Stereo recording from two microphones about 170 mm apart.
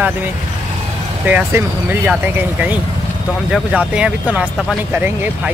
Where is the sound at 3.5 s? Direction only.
5° right (ahead or behind).